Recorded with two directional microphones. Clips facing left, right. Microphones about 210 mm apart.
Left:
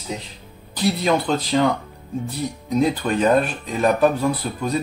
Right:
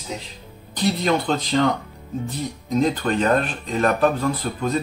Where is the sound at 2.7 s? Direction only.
10° left (ahead or behind).